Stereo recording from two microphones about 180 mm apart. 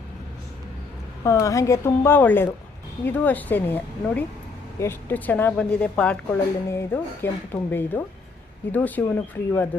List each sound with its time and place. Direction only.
1.2 s speech: 15° left (ahead or behind)